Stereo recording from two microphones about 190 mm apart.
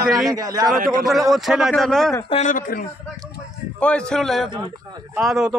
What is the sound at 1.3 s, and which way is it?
Speech, centre (ahead or behind).